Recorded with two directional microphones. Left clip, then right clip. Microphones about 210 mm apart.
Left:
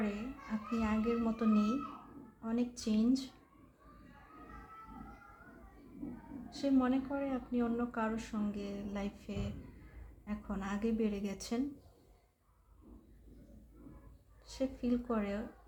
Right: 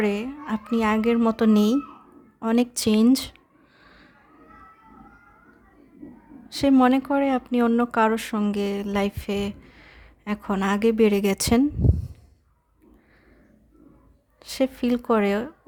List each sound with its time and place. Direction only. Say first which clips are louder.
0.0 s speech: right 15 dB; 55° right (ahead or behind)
6.5 s speech: right 15 dB; 55° right (ahead or behind)
14.4 s speech: right 14 dB; 55° right (ahead or behind)